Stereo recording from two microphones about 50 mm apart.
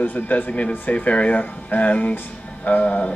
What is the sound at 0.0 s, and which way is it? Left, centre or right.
Speech, left.